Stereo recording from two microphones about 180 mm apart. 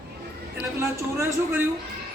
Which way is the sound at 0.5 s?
10° right (ahead or behind).